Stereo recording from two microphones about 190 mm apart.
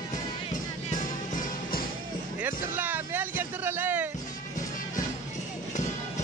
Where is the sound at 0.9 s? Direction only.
45° left (ahead or behind).